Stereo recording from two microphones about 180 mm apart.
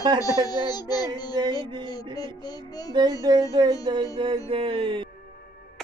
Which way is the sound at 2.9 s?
25° right (ahead or behind).